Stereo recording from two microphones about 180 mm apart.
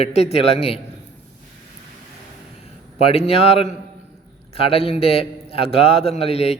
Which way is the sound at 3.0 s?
35° left (ahead or behind).